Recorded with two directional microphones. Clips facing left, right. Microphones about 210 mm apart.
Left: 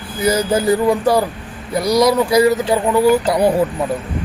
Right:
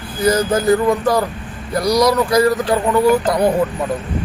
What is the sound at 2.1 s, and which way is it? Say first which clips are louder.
Speech: left 1 dB; 10° left (ahead or behind).